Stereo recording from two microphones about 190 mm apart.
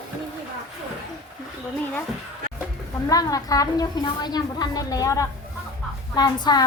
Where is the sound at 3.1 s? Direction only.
20° left (ahead or behind).